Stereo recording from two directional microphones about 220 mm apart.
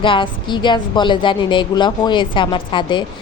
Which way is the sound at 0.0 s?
20° left (ahead or behind).